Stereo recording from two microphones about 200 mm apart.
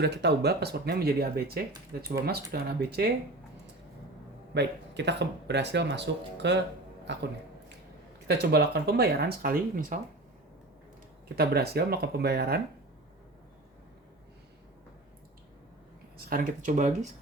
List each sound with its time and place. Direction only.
0.0 s speech: 55° right (ahead or behind)
4.5 s speech: 60° right (ahead or behind)
8.3 s speech: 55° right (ahead or behind)
11.3 s speech: 50° right (ahead or behind)
16.1 s speech: 45° right (ahead or behind)